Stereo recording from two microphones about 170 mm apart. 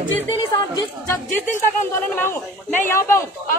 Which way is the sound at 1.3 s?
10° left (ahead or behind).